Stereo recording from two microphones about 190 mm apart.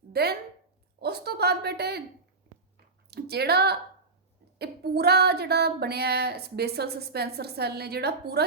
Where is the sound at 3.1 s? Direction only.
60° right (ahead or behind).